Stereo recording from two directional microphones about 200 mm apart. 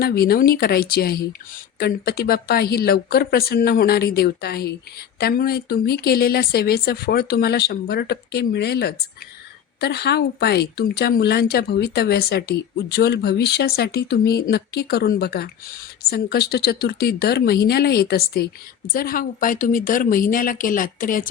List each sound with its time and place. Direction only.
0.0 s speech: 50° left (ahead or behind)